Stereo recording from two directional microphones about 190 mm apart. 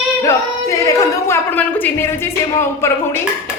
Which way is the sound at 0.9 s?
10° left (ahead or behind).